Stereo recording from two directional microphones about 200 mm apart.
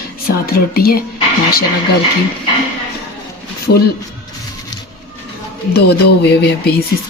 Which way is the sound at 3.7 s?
60° left (ahead or behind).